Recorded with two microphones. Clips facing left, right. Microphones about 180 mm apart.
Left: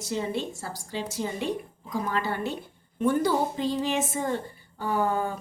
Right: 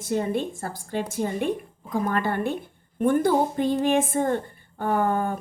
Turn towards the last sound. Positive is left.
turn(degrees=-55)  # may be behind; listen again after turning